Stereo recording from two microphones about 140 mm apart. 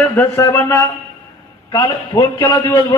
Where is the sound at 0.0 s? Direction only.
15° left (ahead or behind).